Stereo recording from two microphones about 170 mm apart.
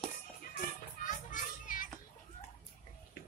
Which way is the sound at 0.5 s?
50° left (ahead or behind).